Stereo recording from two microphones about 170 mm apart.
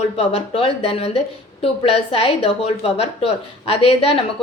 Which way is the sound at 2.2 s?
35° left (ahead or behind).